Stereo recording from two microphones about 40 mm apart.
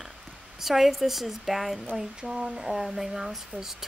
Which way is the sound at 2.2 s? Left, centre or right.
Right.